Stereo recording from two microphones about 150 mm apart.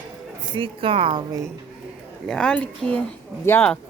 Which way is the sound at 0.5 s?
35° right (ahead or behind).